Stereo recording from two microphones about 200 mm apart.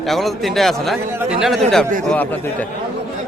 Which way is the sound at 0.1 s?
Centre (ahead or behind).